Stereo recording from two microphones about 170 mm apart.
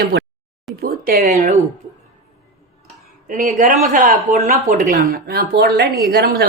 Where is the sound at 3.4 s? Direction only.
45° right (ahead or behind).